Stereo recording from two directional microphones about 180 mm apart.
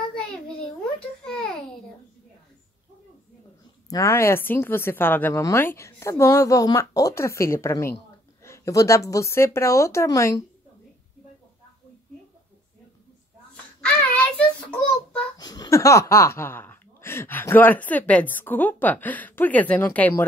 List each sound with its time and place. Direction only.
0.9 s babbling: 5° left (ahead or behind)
3.9 s speech: 15° left (ahead or behind)
13.7 s child singing: 10° left (ahead or behind)
15.3 s speech: 20° left (ahead or behind)